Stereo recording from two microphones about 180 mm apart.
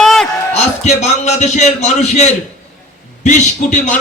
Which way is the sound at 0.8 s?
40° left (ahead or behind).